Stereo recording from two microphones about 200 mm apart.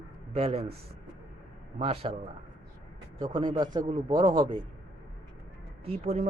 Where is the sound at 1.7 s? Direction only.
30° right (ahead or behind).